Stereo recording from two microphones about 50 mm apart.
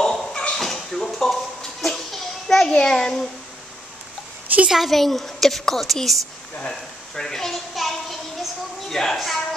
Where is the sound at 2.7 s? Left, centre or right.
Centre.